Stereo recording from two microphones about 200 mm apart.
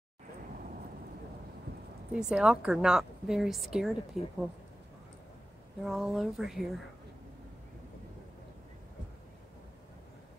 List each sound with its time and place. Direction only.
2.1 s a woman's voice: 5° right (ahead or behind)
5.9 s a woman's voice: centre (ahead or behind)